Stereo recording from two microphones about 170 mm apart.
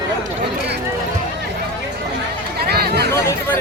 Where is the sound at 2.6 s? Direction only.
70° right (ahead or behind).